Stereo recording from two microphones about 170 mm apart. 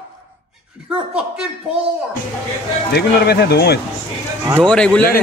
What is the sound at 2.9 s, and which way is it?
Speech, 70° left (ahead or behind).